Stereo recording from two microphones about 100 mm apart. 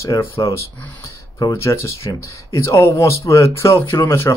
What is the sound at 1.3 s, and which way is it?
Speech, 30° left (ahead or behind).